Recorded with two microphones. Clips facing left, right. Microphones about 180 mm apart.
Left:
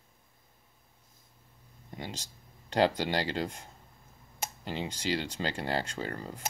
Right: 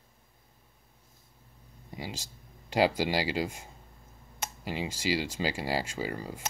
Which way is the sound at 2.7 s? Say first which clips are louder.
Right 1 dB; 10° right (ahead or behind).